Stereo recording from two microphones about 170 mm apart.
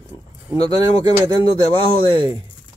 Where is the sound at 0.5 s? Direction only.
35° left (ahead or behind).